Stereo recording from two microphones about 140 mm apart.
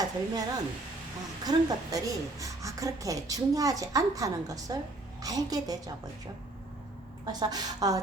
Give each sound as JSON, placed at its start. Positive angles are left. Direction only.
{"t": 0.0, "sound": "a woman's voice", "side_deg": -25}
{"t": 7.3, "sound": "a woman's voice", "side_deg": -30}